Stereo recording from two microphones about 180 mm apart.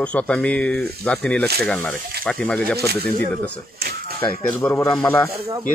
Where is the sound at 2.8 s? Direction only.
60° right (ahead or behind).